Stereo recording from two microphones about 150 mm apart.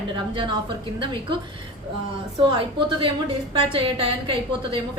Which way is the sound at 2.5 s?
35° right (ahead or behind).